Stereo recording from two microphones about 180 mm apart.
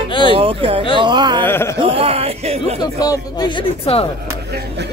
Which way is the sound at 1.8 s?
30° right (ahead or behind).